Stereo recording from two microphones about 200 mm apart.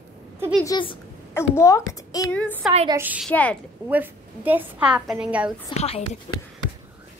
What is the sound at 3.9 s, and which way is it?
A woman's voice, 10° right (ahead or behind).